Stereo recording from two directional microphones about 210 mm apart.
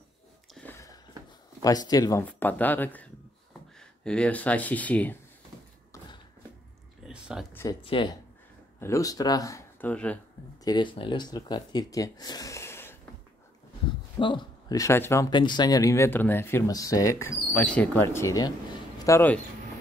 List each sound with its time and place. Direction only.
0.6 s a sound: 10° left (ahead or behind)
1.6 s speech: 20° left (ahead or behind)
7.1 s a sound: 5° right (ahead or behind)
7.8 s speech: 25° left (ahead or behind)
8.7 s speech: 15° left (ahead or behind)
10.6 s speech: 20° left (ahead or behind)
14.2 s speech: 20° left (ahead or behind)